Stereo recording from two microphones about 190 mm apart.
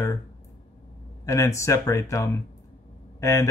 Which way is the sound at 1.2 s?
15° left (ahead or behind).